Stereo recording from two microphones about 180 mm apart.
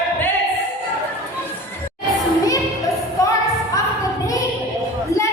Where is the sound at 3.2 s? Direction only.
15° left (ahead or behind).